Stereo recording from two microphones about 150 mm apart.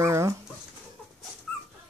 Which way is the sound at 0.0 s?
20° right (ahead or behind).